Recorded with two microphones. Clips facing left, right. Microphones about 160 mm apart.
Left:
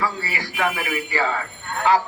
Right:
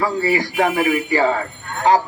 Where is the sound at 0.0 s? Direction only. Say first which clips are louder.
Right 8 dB; 40° right (ahead or behind).